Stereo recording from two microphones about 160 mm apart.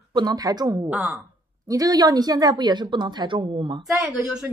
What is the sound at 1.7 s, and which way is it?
Speech, 25° right (ahead or behind).